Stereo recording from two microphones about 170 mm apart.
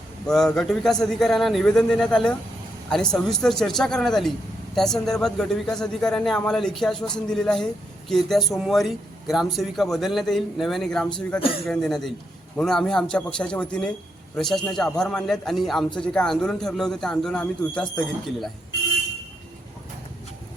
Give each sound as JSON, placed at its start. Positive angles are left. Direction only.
{"t": 0.3, "sound": "speech", "side_deg": 5}
{"t": 11.3, "sound": "speech", "side_deg": 35}
{"t": 11.6, "sound": "speech", "side_deg": 0}